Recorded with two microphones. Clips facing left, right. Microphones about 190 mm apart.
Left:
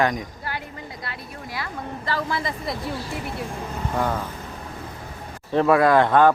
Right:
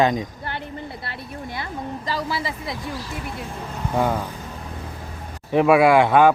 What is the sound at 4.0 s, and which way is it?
Speech, 10° right (ahead or behind).